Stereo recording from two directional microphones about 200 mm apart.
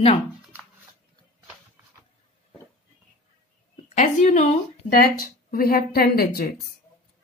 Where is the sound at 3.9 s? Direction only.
35° left (ahead or behind).